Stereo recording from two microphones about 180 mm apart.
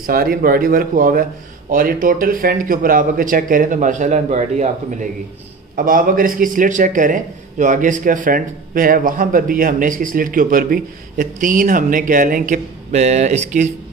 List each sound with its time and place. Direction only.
0.0 s a man's voice: 55° right (ahead or behind)